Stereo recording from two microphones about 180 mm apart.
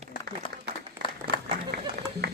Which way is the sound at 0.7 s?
65° right (ahead or behind).